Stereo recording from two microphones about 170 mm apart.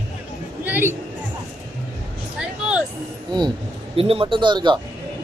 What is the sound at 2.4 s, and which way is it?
Music, 5° right (ahead or behind).